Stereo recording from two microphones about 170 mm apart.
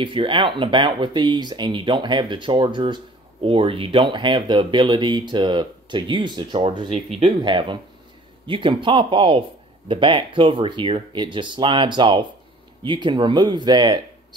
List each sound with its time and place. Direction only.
0.0 s speech: 30° right (ahead or behind)